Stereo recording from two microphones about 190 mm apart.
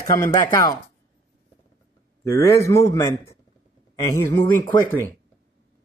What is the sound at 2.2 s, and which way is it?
A man's voice, 15° left (ahead or behind).